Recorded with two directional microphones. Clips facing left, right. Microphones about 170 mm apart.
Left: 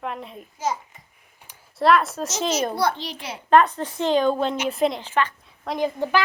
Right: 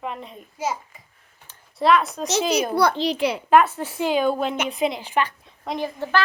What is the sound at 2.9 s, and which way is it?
Speech, 80° right.